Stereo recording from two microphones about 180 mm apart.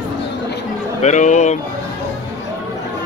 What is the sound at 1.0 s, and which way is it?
Speech, 40° left (ahead or behind).